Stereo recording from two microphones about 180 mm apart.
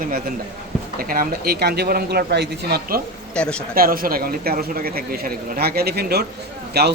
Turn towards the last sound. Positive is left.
turn(degrees=-65)  # may be behind; listen again after turning